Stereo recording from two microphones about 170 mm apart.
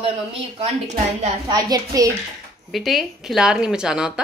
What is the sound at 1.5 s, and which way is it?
Speech, 20° right (ahead or behind).